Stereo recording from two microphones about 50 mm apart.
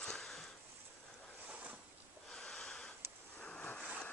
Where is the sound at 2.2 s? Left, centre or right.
Centre.